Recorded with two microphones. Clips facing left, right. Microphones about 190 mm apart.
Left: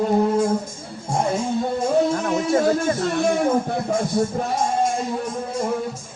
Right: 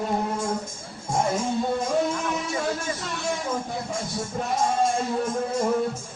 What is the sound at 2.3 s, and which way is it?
Music, 50° left (ahead or behind).